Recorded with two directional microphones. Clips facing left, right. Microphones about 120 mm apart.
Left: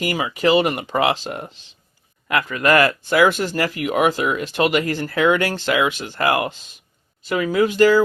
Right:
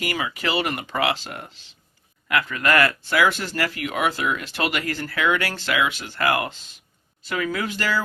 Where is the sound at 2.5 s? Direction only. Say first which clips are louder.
Left 5 dB; 20° left (ahead or behind).